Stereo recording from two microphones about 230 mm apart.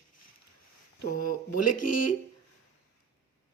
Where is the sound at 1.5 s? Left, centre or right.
Left.